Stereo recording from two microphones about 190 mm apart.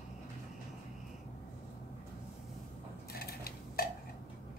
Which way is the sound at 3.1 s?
55° left (ahead or behind).